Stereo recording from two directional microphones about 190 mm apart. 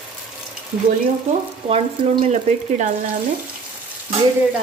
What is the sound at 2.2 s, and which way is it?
Speech, 40° right (ahead or behind).